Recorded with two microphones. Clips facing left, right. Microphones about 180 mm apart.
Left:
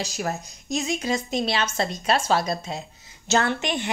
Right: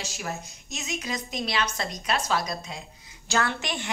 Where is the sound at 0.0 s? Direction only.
35° left (ahead or behind).